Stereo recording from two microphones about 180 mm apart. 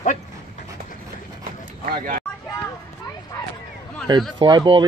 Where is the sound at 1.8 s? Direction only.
50° right (ahead or behind).